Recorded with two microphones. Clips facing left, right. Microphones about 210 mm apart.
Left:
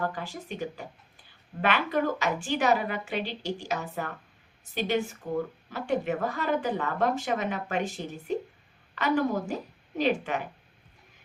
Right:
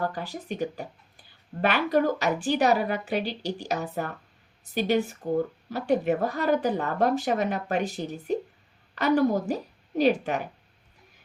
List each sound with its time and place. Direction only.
0.1 s speech: 40° right (ahead or behind)